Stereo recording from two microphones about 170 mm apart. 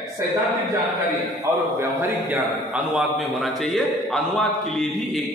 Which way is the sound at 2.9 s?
Centre (ahead or behind).